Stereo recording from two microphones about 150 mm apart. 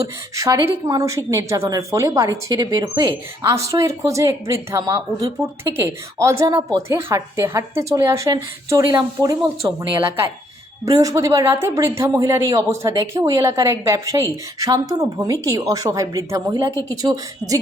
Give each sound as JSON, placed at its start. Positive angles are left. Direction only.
{"t": 0.0, "sound": "a woman's voice", "side_deg": -20}
{"t": 9.6, "sound": "speech", "side_deg": -35}
{"t": 10.8, "sound": "a woman's voice", "side_deg": -25}